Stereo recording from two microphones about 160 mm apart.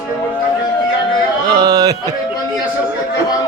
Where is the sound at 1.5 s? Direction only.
25° right (ahead or behind).